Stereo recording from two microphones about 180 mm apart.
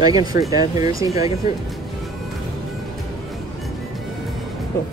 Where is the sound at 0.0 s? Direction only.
20° right (ahead or behind).